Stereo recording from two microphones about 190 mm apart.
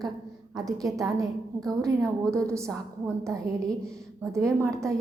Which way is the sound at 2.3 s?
15° right (ahead or behind).